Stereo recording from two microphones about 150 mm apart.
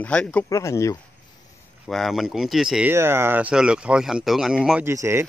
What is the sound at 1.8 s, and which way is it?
Speech, centre (ahead or behind).